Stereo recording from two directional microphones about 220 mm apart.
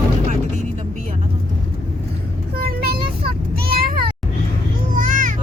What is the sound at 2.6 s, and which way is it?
Vehicle, 45° right (ahead or behind).